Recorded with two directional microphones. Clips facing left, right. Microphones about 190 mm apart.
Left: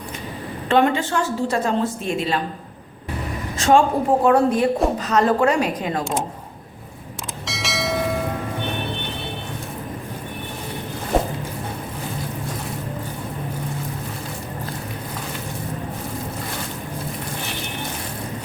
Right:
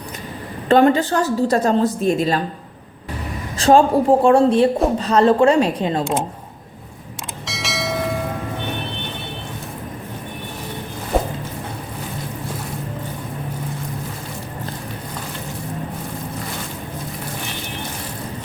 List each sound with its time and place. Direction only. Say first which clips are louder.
0.7 s a woman's voice: right 4 dB; 40° right (ahead or behind)
3.6 s speech: right 3 dB; 30° right (ahead or behind)
7.4 s church bell: even; centre (ahead or behind)